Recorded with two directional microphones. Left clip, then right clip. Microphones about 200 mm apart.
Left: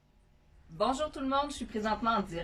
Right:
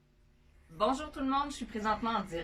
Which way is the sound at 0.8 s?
25° left (ahead or behind).